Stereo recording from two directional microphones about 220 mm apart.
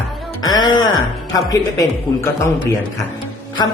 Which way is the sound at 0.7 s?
65° left (ahead or behind).